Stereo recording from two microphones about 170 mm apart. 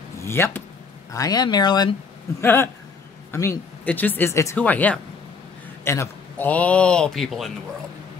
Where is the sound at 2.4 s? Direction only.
15° left (ahead or behind).